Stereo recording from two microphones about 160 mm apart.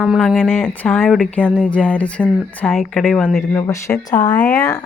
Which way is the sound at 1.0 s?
5° right (ahead or behind).